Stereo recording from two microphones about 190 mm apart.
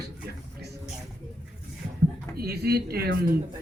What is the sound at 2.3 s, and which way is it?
Speech, 55° right (ahead or behind).